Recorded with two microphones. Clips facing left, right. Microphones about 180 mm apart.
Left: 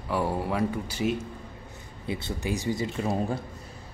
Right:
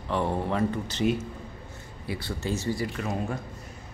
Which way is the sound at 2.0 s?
20° left (ahead or behind).